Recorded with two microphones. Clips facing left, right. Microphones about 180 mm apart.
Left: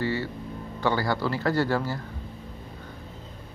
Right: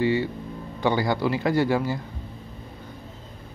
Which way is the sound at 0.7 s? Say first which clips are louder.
Right 3 dB; 15° right (ahead or behind).